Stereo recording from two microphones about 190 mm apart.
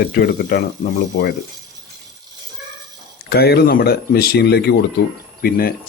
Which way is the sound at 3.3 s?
55° left (ahead or behind).